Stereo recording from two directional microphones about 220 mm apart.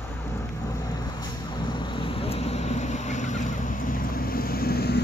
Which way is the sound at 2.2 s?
30° left (ahead or behind).